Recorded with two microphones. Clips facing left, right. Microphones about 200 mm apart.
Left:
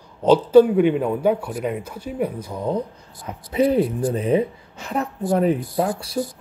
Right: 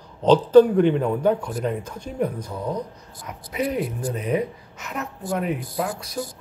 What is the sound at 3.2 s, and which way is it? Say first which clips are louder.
A woman's voice: left 7 dB; 30° left (ahead or behind).